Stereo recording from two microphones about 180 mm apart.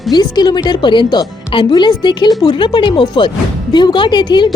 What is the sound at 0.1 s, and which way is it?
Speech, 25° left (ahead or behind).